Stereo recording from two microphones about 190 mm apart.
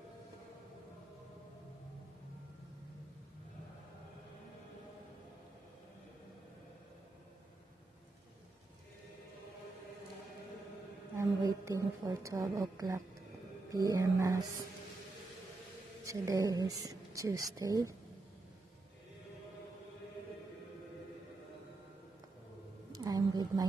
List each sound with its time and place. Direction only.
11.1 s a woman's voice: 15° right (ahead or behind)
16.1 s a woman's voice: 15° right (ahead or behind)
22.9 s a sound: 20° right (ahead or behind)